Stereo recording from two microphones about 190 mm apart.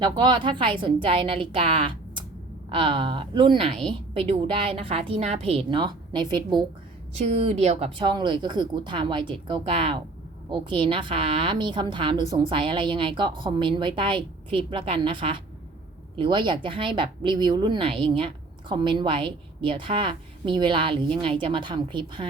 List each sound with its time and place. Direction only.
0.0 s speech: 25° right (ahead or behind)
7.3 s speech: 35° right (ahead or behind)